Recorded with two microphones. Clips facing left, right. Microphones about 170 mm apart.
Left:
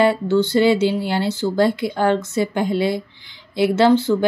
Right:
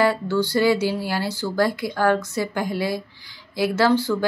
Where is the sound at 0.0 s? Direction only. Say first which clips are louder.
Left 4 dB; 25° left (ahead or behind).